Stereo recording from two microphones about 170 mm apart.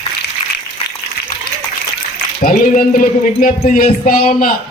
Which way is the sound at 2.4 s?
55° left (ahead or behind).